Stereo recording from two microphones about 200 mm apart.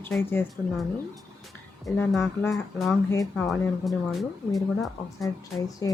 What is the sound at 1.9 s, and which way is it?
Speech, 5° left (ahead or behind).